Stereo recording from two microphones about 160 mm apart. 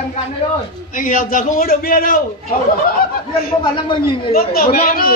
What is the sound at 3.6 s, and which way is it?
Speech, 30° left (ahead or behind).